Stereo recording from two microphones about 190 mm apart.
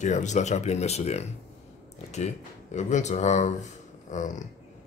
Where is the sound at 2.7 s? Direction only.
40° left (ahead or behind).